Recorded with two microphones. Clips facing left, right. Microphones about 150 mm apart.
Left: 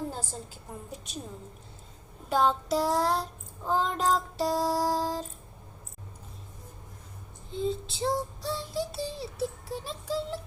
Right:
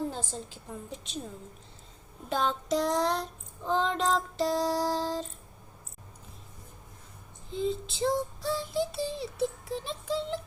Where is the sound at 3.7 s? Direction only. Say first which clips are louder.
Left 1 dB; 5° left (ahead or behind).